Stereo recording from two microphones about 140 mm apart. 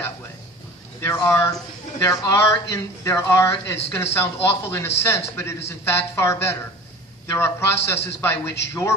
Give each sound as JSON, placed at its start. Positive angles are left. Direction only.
{"t": 1.0, "sound": "speech", "side_deg": 20}